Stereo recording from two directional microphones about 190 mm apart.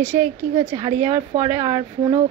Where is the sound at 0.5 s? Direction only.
30° right (ahead or behind).